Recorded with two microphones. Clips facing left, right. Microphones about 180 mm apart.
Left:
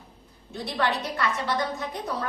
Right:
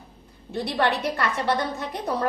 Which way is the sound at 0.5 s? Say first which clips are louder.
Right 3 dB; 65° right (ahead or behind).